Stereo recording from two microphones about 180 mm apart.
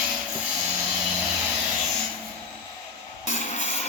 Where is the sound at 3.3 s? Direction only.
40° left (ahead or behind).